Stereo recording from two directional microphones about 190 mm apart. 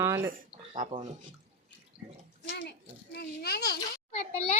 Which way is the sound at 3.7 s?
30° left (ahead or behind).